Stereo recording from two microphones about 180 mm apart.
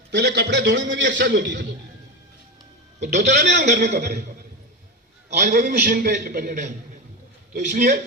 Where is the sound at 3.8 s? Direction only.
70° right (ahead or behind).